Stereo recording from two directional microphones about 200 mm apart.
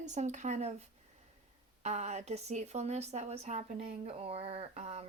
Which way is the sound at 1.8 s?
35° right (ahead or behind).